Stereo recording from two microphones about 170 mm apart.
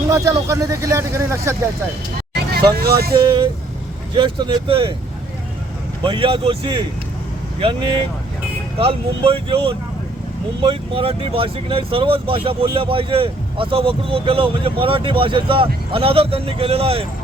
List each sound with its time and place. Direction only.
0.1 s speech: 20° right (ahead or behind)
2.3 s speech: 65° right (ahead or behind)
3.2 s speech: 25° right (ahead or behind)
6.0 s speech: 30° right (ahead or behind)